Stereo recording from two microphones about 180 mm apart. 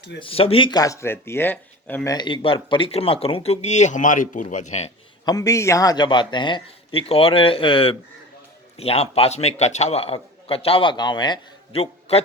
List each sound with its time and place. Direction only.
0.2 s speech: 30° left (ahead or behind); by 2.1 s 10° left (ahead or behind)
2.1 s a man's voice: 25° left (ahead or behind)
5.2 s a man's voice: 20° left (ahead or behind)